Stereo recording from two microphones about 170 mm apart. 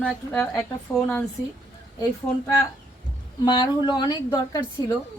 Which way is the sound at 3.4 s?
25° left (ahead or behind).